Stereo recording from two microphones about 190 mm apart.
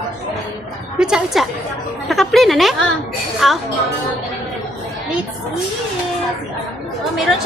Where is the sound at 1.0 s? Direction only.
5° right (ahead or behind).